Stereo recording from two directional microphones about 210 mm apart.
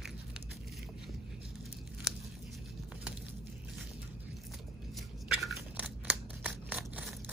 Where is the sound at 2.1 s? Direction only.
Centre (ahead or behind).